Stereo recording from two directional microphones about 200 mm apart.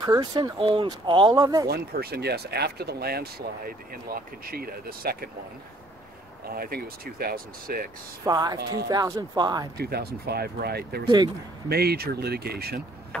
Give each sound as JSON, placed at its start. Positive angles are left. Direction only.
{"t": 0.0, "sound": "speech", "side_deg": -20}
{"t": 1.7, "sound": "speech", "side_deg": -50}
{"t": 6.4, "sound": "speech", "side_deg": -50}
{"t": 8.3, "sound": "speech", "side_deg": -20}
{"t": 9.8, "sound": "speech", "side_deg": -50}